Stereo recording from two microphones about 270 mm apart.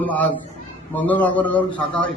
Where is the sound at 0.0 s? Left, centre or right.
Centre.